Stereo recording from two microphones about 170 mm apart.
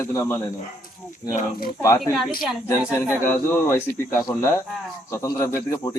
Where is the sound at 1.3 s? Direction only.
60° left (ahead or behind).